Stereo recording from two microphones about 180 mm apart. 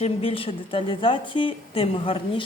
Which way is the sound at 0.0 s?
30° left (ahead or behind).